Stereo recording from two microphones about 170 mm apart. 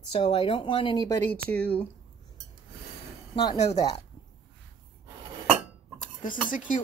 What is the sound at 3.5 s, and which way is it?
Speech, 40° left (ahead or behind).